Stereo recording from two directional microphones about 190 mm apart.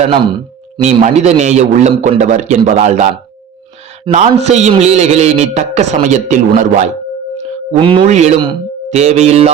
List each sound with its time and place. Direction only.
0.8 s a man's voice: 35° right (ahead or behind)
8.0 s a man's voice: 40° right (ahead or behind)